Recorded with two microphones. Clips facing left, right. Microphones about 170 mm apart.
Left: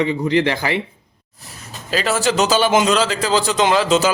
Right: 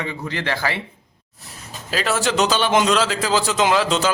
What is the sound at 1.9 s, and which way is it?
Speech, centre (ahead or behind).